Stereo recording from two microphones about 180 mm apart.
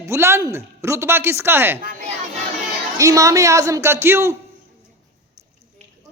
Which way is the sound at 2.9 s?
20° right (ahead or behind).